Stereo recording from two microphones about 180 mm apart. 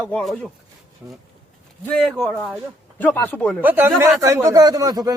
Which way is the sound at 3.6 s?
10° right (ahead or behind).